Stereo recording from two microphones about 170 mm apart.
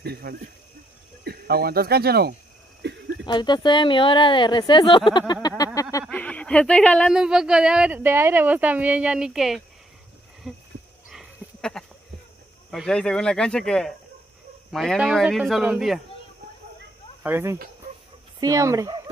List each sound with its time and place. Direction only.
0.0 s speech: 70° right (ahead or behind)
2.8 s a sound: 90° right
3.3 s speech: 25° left (ahead or behind)
5.8 s a sound: 20° left (ahead or behind)
6.0 s speech: 10° left (ahead or behind)
7.2 s speech: 5° right (ahead or behind)
10.4 s a sound: centre (ahead or behind)
12.7 s speech: 5° left (ahead or behind)
17.2 s speech: 10° right (ahead or behind)